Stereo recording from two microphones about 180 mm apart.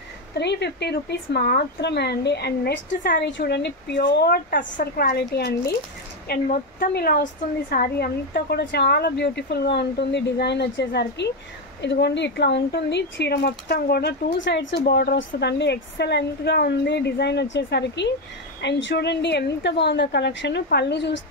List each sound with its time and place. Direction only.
0.4 s speech: 70° left (ahead or behind)
14.9 s speech: 65° left (ahead or behind)